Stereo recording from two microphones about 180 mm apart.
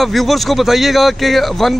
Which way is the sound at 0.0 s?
Centre (ahead or behind).